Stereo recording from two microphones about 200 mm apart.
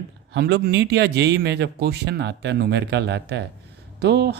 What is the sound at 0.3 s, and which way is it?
Speech, 60° right (ahead or behind).